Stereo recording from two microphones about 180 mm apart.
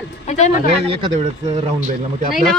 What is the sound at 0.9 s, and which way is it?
Speech, 25° right (ahead or behind).